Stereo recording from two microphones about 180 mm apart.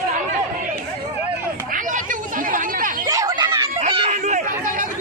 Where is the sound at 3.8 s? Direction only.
35° right (ahead or behind).